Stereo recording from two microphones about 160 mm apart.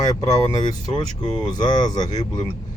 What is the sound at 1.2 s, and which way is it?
Speech, 25° left (ahead or behind).